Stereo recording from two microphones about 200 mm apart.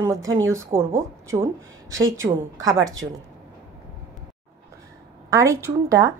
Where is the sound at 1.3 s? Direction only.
15° right (ahead or behind).